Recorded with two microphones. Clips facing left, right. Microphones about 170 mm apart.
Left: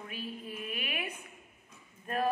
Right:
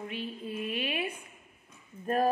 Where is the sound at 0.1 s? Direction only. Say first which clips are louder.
Right 4 dB; 30° right (ahead or behind).